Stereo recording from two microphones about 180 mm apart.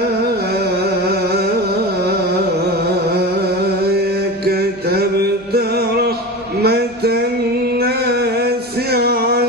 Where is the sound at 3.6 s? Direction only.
60° right (ahead or behind).